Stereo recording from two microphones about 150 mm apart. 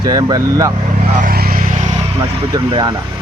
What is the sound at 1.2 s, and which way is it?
Vehicle, 75° right (ahead or behind).